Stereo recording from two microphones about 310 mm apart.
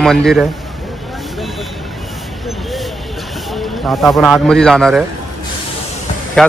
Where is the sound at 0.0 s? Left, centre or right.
Centre.